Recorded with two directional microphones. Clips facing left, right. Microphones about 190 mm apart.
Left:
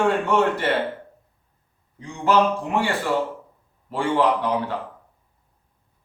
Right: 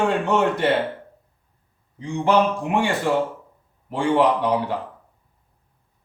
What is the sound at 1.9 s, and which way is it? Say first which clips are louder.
Speech: right 1 dB; 20° right (ahead or behind).